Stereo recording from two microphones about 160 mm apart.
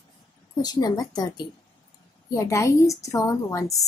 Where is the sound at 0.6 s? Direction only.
25° left (ahead or behind).